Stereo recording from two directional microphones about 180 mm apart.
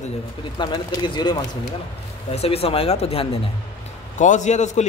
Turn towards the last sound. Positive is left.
turn(degrees=40)  # may be behind; listen again after turning